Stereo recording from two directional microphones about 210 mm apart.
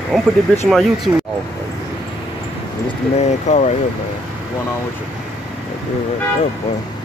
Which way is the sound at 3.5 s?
35° left (ahead or behind).